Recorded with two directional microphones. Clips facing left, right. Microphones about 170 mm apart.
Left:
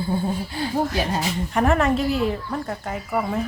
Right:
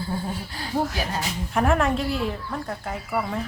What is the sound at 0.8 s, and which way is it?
Speech, centre (ahead or behind).